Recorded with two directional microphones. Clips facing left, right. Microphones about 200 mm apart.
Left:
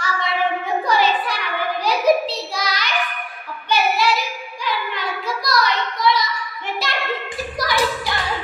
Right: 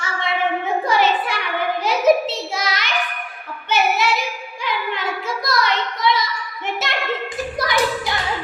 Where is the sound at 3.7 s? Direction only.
20° right (ahead or behind).